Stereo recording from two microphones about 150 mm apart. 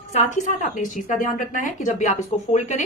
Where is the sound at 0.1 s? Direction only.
50° left (ahead or behind).